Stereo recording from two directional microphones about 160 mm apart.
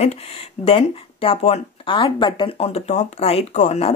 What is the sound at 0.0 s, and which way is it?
Speech, 40° left (ahead or behind).